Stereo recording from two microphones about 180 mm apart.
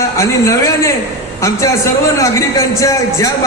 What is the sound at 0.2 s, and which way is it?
A man's voice, 15° left (ahead or behind).